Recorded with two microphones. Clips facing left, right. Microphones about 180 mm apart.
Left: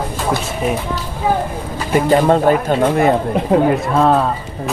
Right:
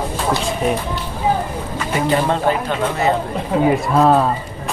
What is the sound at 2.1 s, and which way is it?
Speech, 45° left (ahead or behind).